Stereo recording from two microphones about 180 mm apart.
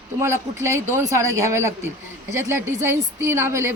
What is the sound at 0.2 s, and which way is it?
A woman's voice, 15° right (ahead or behind).